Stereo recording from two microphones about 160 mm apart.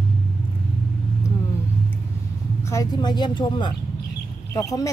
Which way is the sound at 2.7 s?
25° left (ahead or behind).